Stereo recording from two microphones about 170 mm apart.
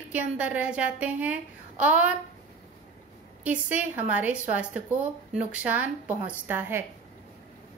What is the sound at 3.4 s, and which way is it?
A woman's voice, 10° right (ahead or behind).